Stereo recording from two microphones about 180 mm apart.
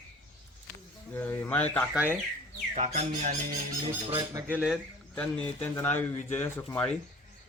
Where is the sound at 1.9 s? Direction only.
10° right (ahead or behind).